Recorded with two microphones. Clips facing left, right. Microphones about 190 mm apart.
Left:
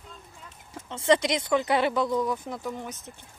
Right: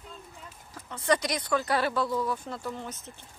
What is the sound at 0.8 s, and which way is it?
Speech, 25° left (ahead or behind).